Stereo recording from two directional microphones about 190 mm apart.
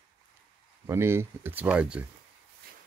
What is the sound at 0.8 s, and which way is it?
Speech, 15° right (ahead or behind).